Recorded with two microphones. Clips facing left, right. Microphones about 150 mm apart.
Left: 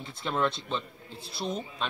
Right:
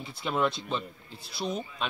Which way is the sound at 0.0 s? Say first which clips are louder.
Right 1 dB; 5° right (ahead or behind).